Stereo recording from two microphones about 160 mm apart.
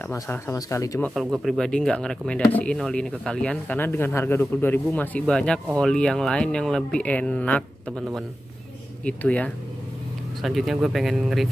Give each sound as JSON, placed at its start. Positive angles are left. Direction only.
{"t": 0.0, "sound": "speech", "side_deg": 15}
{"t": 1.1, "sound": "speech", "side_deg": 0}